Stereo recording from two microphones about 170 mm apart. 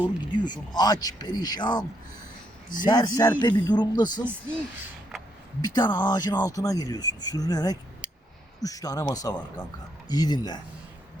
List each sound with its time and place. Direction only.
0.3 s speech: 25° left (ahead or behind)
5.6 s speech: 25° left (ahead or behind)